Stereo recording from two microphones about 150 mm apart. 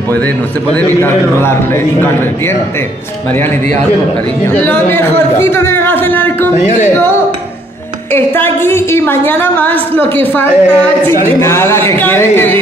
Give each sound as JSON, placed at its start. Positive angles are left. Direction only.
{"t": 0.7, "sound": "a woman's voice", "side_deg": 10}
{"t": 4.6, "sound": "a man's voice", "side_deg": 15}
{"t": 8.1, "sound": "a woman's voice", "side_deg": 15}